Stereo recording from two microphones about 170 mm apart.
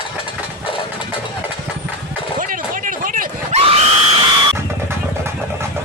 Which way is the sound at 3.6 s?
35° right (ahead or behind).